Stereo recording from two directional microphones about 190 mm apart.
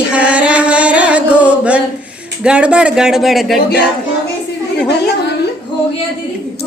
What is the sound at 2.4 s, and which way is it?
Speech, 5° right (ahead or behind).